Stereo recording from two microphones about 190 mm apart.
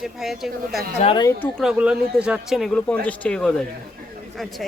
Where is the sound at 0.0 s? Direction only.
Centre (ahead or behind).